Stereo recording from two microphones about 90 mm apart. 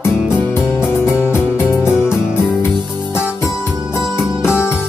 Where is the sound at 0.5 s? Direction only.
30° left (ahead or behind).